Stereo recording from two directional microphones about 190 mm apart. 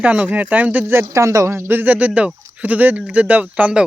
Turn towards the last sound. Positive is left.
turn(degrees=-5)  # may be behind; listen again after turning